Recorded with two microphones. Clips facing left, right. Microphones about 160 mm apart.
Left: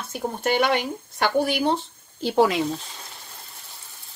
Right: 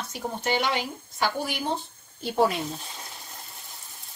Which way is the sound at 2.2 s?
90° left.